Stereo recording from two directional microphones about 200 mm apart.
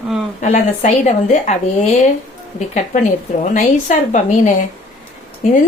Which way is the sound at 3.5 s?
40° left (ahead or behind).